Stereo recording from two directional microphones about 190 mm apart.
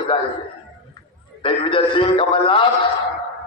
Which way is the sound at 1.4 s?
25° left (ahead or behind).